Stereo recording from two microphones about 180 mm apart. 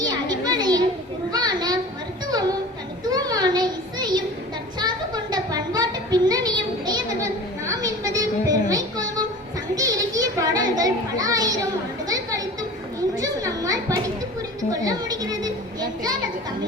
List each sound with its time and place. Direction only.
0.0 s children playing: 20° right (ahead or behind)
3.1 s a sound: 20° right (ahead or behind)
9.7 s children playing: 20° right (ahead or behind)
12.0 s chatter: 20° right (ahead or behind)
13.1 s a sound: 20° right (ahead or behind)
14.7 s children playing: 20° right (ahead or behind)